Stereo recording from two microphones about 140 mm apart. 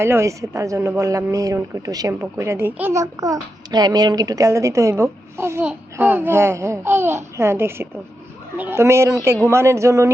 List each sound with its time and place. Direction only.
0.0 s a child's voice: 20° right (ahead or behind)